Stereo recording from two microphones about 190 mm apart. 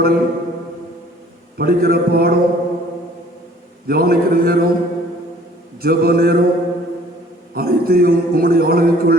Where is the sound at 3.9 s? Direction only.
50° right (ahead or behind).